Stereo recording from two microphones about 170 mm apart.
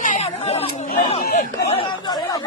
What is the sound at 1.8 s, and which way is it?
Speech, 25° left (ahead or behind).